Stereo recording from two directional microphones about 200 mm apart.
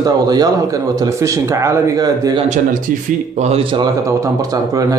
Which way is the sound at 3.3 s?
30° right (ahead or behind).